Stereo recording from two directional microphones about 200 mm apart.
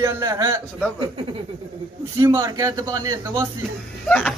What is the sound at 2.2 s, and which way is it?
A man's voice, 15° right (ahead or behind).